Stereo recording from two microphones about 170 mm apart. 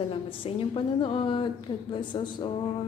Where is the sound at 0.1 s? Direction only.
30° left (ahead or behind).